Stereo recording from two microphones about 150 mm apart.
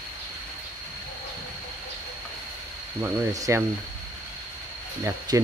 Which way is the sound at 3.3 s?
20° right (ahead or behind).